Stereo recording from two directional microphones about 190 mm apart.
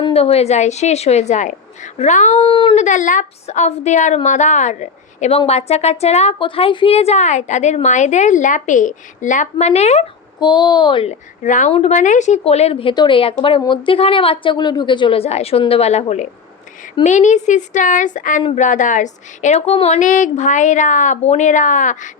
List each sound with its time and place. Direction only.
0.0 s a woman's voice: 30° left (ahead or behind)
2.8 s a woman's voice: 40° left (ahead or behind)
10.4 s a woman's voice: 20° left (ahead or behind); by 22.1 s 40° left (ahead or behind)